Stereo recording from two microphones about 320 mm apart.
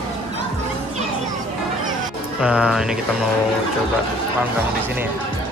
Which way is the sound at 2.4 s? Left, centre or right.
Centre.